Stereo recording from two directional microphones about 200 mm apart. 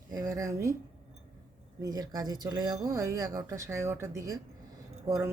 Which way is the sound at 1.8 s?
20° right (ahead or behind).